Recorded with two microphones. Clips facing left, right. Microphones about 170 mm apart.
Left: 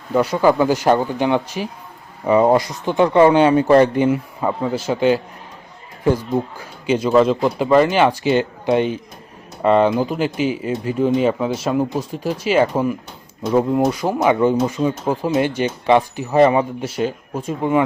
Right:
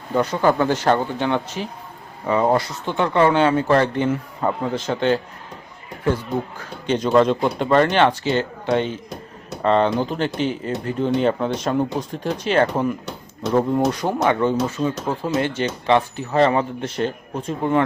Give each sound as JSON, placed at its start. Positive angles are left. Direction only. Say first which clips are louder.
{"t": 0.1, "sound": "speech", "louder": "left 3 dB", "side_deg": 5}
{"t": 6.6, "sound": "speech", "louder": "left 3 dB", "side_deg": 5}